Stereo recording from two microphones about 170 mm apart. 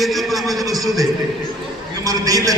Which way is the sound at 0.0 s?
Centre (ahead or behind).